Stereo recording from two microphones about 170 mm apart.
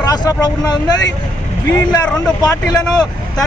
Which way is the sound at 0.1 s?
25° left (ahead or behind).